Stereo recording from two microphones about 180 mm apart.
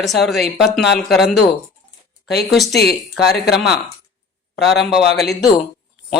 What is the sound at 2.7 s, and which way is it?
Speech, 65° left (ahead or behind).